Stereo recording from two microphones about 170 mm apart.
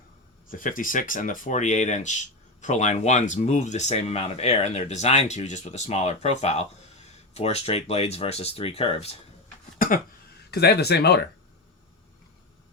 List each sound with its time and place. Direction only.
0.5 s speech: 50° left (ahead or behind); by 9.1 s 35° left (ahead or behind)
9.7 s a sound: 55° left (ahead or behind)
10.5 s a man's voice: 70° left (ahead or behind)